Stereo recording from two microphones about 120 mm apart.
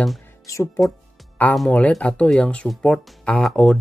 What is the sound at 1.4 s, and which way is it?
Speech, 15° left (ahead or behind).